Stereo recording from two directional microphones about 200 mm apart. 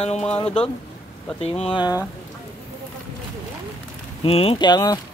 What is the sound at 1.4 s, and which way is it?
Speech, 30° left (ahead or behind).